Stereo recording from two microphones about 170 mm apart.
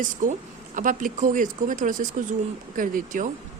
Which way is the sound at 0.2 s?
50° right (ahead or behind).